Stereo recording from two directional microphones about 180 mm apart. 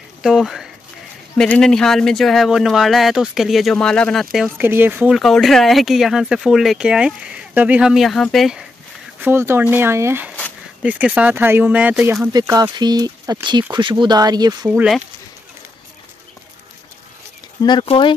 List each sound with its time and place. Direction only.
0.2 s speech: centre (ahead or behind)
9.2 s speech: 15° right (ahead or behind)
12.3 s speech: 20° right (ahead or behind)
14.7 s speech: centre (ahead or behind)
17.6 s speech: 25° left (ahead or behind)